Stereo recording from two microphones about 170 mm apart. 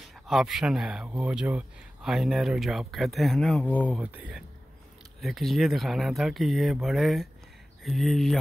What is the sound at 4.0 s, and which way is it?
Speech, 5° right (ahead or behind).